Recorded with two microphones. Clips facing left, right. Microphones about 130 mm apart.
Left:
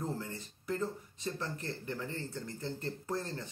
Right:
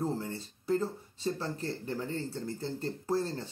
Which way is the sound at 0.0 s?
30° right (ahead or behind).